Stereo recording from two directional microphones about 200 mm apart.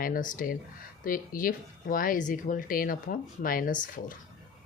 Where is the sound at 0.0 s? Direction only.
45° left (ahead or behind).